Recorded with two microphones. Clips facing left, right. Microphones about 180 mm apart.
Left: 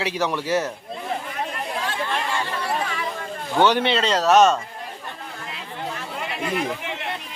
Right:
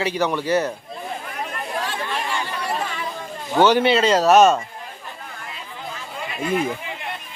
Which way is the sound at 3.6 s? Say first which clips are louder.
Right 3 dB; 5° right (ahead or behind).